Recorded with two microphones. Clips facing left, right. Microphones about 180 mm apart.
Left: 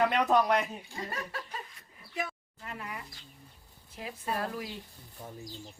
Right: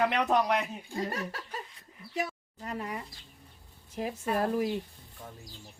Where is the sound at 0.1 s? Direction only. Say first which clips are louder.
Left 1 dB; centre (ahead or behind).